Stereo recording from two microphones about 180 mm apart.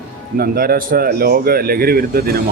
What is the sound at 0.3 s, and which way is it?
A man's voice, 55° right (ahead or behind).